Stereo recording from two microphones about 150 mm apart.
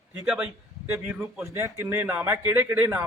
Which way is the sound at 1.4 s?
20° right (ahead or behind).